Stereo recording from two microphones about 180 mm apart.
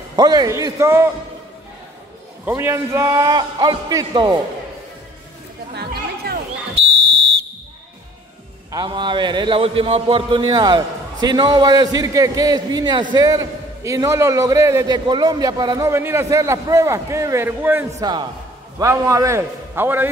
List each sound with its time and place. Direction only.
0.1 s speech: 20° right (ahead or behind)
2.4 s speech: 15° right (ahead or behind)
5.8 s chatter: 60° right (ahead or behind)
8.7 s a man's voice: 25° right (ahead or behind)